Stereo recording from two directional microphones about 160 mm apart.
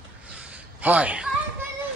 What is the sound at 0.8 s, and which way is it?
Speech, 10° right (ahead or behind).